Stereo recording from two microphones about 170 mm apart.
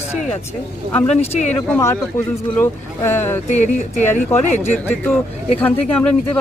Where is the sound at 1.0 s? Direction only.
40° left (ahead or behind).